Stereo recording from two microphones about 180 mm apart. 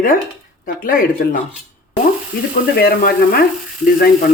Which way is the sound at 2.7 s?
55° left (ahead or behind).